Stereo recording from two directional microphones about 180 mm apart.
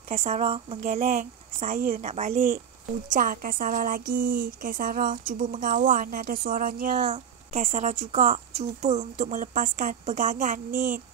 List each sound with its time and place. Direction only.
0.1 s a woman's voice: 35° right (ahead or behind)